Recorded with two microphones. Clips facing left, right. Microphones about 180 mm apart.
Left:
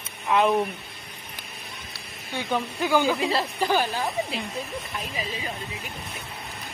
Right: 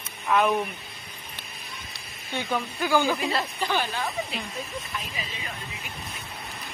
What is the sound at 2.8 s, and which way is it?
Speech, 20° left (ahead or behind).